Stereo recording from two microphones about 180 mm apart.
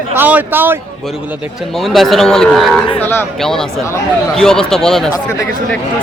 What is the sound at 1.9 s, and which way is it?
Speech, centre (ahead or behind).